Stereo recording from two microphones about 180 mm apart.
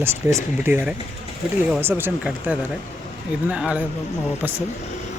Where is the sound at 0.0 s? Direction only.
10° right (ahead or behind).